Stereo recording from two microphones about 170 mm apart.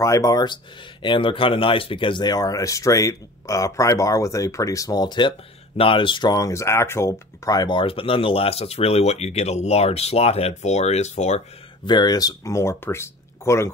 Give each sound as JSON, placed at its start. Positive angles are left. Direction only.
{"t": 0.0, "sound": "speech", "side_deg": 20}
{"t": 11.8, "sound": "speech", "side_deg": 25}